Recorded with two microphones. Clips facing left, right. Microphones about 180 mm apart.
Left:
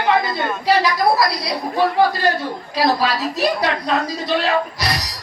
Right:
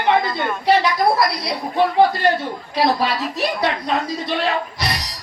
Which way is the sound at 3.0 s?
55° right (ahead or behind).